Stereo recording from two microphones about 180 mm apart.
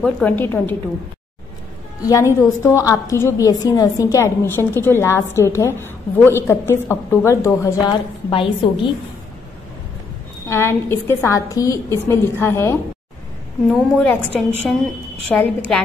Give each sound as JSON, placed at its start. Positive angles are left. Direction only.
{"t": 0.0, "sound": "a woman's voice", "side_deg": 10}
{"t": 2.0, "sound": "a woman's voice", "side_deg": 20}
{"t": 8.3, "sound": "a woman's voice", "side_deg": 30}
{"t": 10.5, "sound": "a woman's voice", "side_deg": 15}